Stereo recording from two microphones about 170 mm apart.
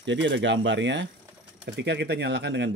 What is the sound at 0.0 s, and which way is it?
Speech, 90° right.